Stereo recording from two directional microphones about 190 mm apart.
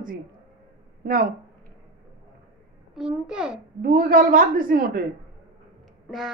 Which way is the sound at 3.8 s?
50° right (ahead or behind).